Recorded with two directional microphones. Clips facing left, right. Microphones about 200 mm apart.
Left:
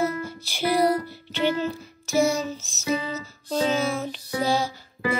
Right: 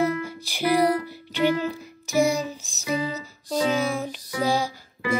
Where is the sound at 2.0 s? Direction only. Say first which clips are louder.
Even; 15° right (ahead or behind).